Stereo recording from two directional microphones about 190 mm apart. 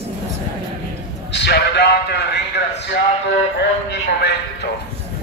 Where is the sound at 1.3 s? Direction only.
65° left (ahead or behind).